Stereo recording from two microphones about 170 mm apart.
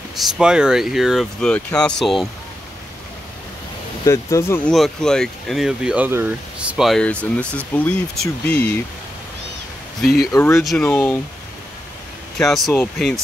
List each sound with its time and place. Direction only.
0.1 s speech: 5° right (ahead or behind)
4.0 s speech: 20° left (ahead or behind)
4.6 s speech: centre (ahead or behind)
10.3 s speech: 15° left (ahead or behind)
10.6 s speech: 5° left (ahead or behind)
12.4 s speech: centre (ahead or behind)